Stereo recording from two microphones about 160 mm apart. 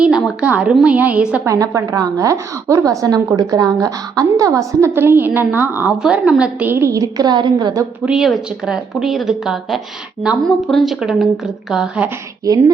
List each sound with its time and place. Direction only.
0.0 s a woman's voice: 5° right (ahead or behind)
1.5 s a woman's voice: 20° right (ahead or behind)
8.0 s a woman's voice: 5° right (ahead or behind)